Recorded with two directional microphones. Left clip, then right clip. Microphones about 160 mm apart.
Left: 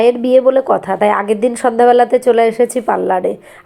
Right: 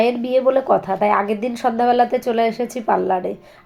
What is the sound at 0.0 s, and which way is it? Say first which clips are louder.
A woman's voice: left 7 dB; 30° left (ahead or behind).